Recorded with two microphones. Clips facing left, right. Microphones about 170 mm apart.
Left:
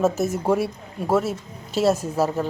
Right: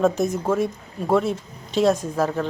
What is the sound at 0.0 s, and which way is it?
Speech, 5° left (ahead or behind).